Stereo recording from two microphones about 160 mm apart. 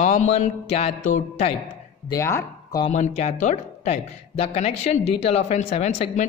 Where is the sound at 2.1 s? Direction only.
15° left (ahead or behind).